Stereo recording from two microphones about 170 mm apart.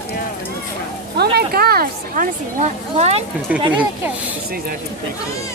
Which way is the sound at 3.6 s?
25° right (ahead or behind).